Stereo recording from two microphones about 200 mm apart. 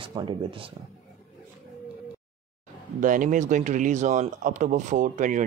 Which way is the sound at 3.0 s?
40° right (ahead or behind).